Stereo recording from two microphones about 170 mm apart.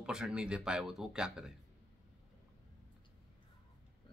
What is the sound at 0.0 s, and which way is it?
Speech, 5° right (ahead or behind).